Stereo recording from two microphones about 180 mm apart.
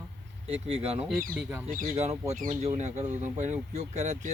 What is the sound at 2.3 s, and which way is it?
Speech, 45° right (ahead or behind).